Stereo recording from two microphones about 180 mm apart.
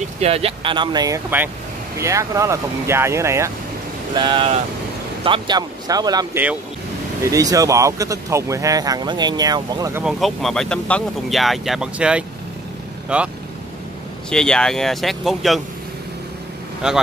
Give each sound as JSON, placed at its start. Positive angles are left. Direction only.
{"t": 0.2, "sound": "speech", "side_deg": -35}
{"t": 4.1, "sound": "speech", "side_deg": -25}
{"t": 10.0, "sound": "speech", "side_deg": 0}
{"t": 14.3, "sound": "speech", "side_deg": 5}
{"t": 16.8, "sound": "speech", "side_deg": -5}